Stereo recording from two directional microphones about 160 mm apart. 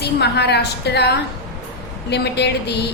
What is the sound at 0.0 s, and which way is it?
A woman's voice, 90° left.